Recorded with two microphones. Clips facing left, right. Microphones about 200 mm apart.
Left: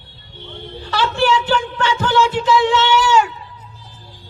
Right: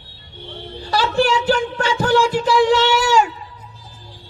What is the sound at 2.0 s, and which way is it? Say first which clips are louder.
Speech: right 1 dB; 40° right (ahead or behind).